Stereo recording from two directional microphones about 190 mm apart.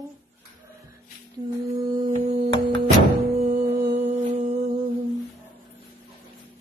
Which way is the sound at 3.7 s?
60° right (ahead or behind).